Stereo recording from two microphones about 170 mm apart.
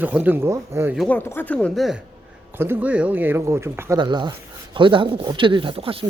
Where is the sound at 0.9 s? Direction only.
10° left (ahead or behind).